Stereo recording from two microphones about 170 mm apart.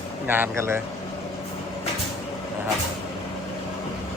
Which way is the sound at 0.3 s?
10° right (ahead or behind).